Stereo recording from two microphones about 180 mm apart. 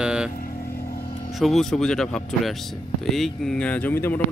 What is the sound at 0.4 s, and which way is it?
Vehicle, 55° left (ahead or behind).